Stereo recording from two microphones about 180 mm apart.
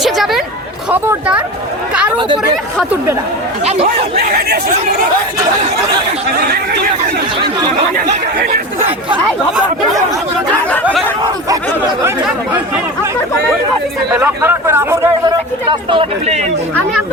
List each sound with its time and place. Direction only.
0.0 s chatter: centre (ahead or behind)
0.9 s speech: 10° right (ahead or behind)
2.7 s speech: 10° right (ahead or behind)
3.7 s speech: 35° right (ahead or behind)
4.2 s speech: 60° right (ahead or behind)
14.1 s speech: 10° right (ahead or behind); by 16.4 s 30° right (ahead or behind)